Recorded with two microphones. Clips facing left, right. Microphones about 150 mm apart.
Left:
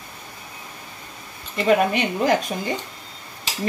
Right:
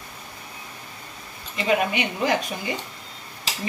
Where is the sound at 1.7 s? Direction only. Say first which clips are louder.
Left 4 dB; 45° left (ahead or behind).